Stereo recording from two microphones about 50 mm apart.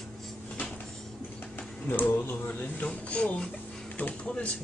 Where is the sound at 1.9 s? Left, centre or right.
Left.